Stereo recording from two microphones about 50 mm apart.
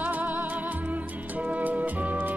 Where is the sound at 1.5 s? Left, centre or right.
Right.